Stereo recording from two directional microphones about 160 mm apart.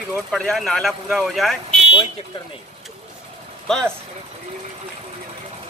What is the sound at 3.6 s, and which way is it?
Speech, 5° left (ahead or behind).